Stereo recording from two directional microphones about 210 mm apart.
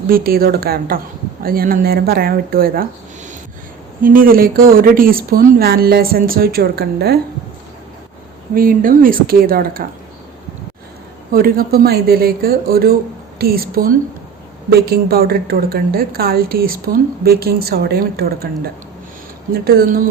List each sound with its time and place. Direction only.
0.1 s a woman's voice: 45° right (ahead or behind)
4.0 s a woman's voice: 40° right (ahead or behind)
8.5 s a woman's voice: 45° right (ahead or behind)
11.3 s a woman's voice: 45° right (ahead or behind)